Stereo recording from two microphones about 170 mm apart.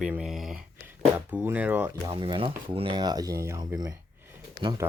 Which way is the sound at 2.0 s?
30° right (ahead or behind).